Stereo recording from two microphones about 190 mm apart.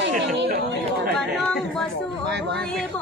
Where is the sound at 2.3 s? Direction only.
60° right (ahead or behind).